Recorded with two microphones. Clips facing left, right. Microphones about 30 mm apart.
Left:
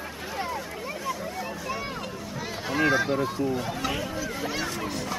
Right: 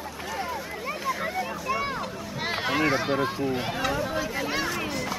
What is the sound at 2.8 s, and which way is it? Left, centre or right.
Speech, right.